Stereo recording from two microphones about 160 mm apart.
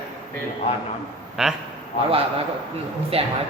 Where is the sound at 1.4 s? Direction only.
5° right (ahead or behind).